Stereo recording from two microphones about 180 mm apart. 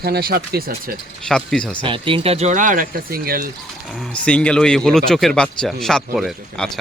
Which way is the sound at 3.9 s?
5° left (ahead or behind).